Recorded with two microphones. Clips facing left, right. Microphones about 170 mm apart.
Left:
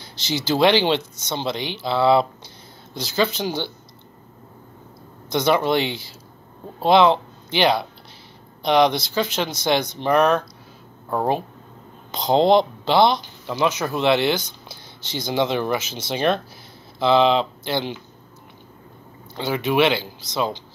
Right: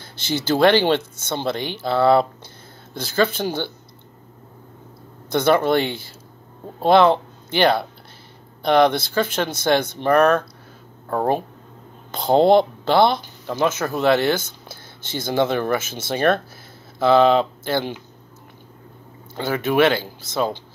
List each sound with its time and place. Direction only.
0.0 s speech: 55° right (ahead or behind)
5.3 s speech: 50° right (ahead or behind)
19.3 s speech: 50° right (ahead or behind)